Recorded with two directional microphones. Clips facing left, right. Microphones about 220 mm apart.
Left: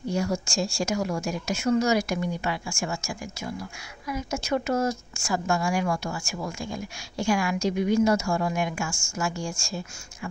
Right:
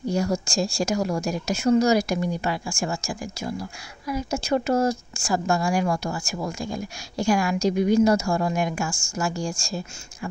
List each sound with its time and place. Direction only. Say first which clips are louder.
0.0 s speech: right 3 dB; 40° right (ahead or behind)